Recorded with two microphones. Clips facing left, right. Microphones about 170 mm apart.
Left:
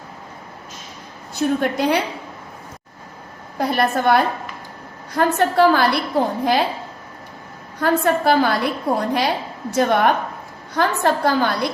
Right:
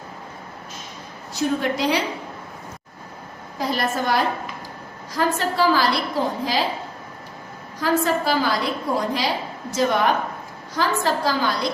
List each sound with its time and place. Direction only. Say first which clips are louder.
1.4 s a woman's voice: left 3 dB; 55° left (ahead or behind)
3.6 s a woman's voice: left 5 dB; 60° left (ahead or behind)
7.8 s a woman's voice: left 3 dB; 55° left (ahead or behind)